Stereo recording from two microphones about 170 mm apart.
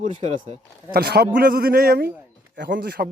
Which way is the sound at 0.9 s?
65° right (ahead or behind).